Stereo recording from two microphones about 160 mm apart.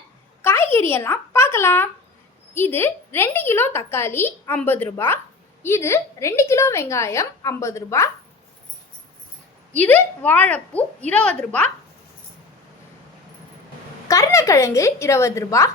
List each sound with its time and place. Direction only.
0.4 s a sound: 15° left (ahead or behind)
2.6 s a woman's voice: 15° left (ahead or behind)
9.8 s a woman's voice: 10° left (ahead or behind)
14.1 s a woman's voice: 20° left (ahead or behind)